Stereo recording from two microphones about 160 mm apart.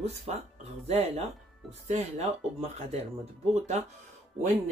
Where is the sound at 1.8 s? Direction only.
45° right (ahead or behind).